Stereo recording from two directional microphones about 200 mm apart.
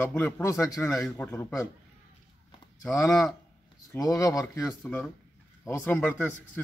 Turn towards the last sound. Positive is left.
turn(degrees=10)  # may be behind; listen again after turning